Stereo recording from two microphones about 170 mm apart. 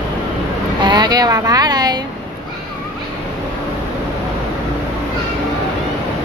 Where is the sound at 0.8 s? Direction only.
25° right (ahead or behind).